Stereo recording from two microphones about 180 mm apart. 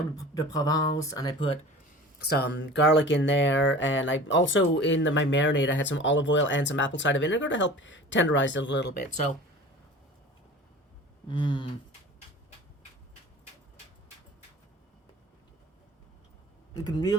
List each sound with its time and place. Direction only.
0.3 s speech: 20° left (ahead or behind)
2.1 s speech: 65° left (ahead or behind)
11.3 s speech: 25° left (ahead or behind)
16.7 s speech: 20° left (ahead or behind)